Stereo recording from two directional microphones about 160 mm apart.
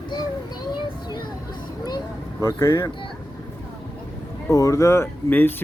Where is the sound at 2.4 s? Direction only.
15° left (ahead or behind).